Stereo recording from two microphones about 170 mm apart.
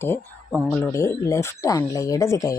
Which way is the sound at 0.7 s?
15° left (ahead or behind).